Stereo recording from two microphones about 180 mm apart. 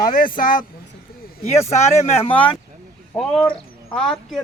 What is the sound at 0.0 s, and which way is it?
Speech, 55° left (ahead or behind).